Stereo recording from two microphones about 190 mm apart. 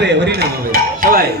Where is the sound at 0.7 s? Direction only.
50° right (ahead or behind).